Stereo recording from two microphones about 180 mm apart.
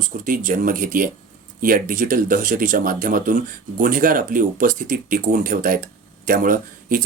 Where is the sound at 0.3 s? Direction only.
50° right (ahead or behind).